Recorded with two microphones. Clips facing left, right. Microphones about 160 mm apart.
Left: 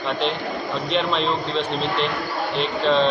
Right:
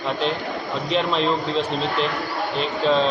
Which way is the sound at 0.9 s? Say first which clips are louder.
Right 2 dB; 5° right (ahead or behind).